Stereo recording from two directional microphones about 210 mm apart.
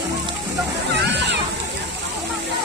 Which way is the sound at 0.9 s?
55° right (ahead or behind).